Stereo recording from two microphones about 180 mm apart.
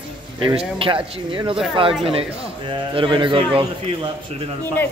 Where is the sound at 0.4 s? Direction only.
30° right (ahead or behind).